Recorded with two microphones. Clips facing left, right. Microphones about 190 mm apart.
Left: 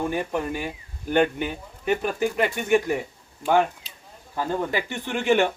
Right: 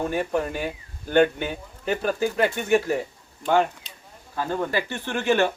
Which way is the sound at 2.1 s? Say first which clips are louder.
Right 1 dB; 15° left (ahead or behind).